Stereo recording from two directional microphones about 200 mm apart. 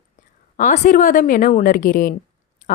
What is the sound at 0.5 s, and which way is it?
A woman's voice, 40° left (ahead or behind).